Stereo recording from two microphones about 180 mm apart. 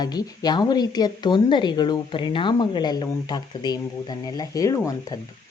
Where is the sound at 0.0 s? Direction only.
20° left (ahead or behind).